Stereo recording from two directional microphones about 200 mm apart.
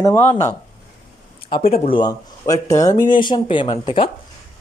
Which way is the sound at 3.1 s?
25° left (ahead or behind).